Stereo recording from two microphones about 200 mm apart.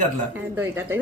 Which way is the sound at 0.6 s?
10° right (ahead or behind).